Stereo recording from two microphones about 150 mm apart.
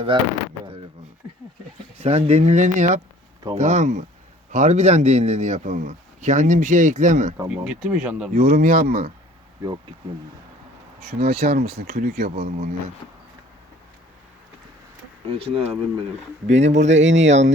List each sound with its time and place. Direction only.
0.1 s speech: 30° right (ahead or behind)
2.0 s a man's voice: 40° right (ahead or behind)
7.4 s speech: 5° right (ahead or behind)
8.3 s speech: 85° right
11.2 s speech: 90° right
15.4 s a man's voice: 40° right (ahead or behind)